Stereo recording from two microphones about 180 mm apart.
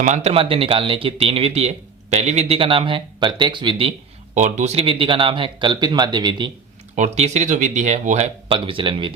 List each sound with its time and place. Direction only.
0.0 s speech: 40° right (ahead or behind)
4.4 s speech: 40° right (ahead or behind); by 6.5 s 25° right (ahead or behind)
6.9 s speech: 40° right (ahead or behind)